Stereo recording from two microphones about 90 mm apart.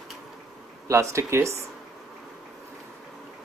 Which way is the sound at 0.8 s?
35° right (ahead or behind).